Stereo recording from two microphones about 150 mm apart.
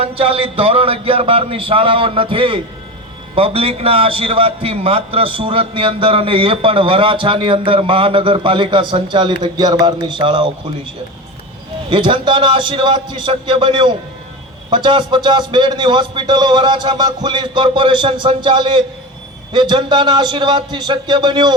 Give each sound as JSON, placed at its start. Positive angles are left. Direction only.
{"t": 0.0, "sound": "a man's voice", "side_deg": -35}
{"t": 11.9, "sound": "a man's voice", "side_deg": -30}